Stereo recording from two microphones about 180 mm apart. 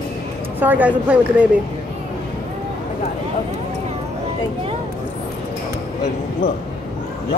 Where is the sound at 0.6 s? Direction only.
10° right (ahead or behind).